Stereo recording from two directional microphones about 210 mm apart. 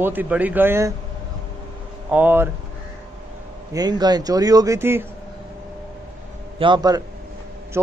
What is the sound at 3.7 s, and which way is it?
A man's voice, 20° right (ahead or behind).